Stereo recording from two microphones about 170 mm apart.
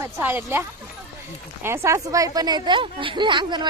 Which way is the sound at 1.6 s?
15° right (ahead or behind).